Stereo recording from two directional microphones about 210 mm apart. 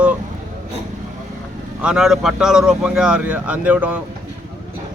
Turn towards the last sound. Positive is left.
turn(degrees=-5)  # may be behind; listen again after turning